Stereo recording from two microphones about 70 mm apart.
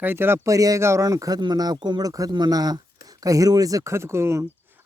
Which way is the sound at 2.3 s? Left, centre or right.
Right.